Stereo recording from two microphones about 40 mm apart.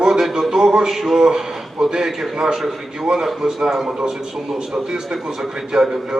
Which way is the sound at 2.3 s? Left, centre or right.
Centre.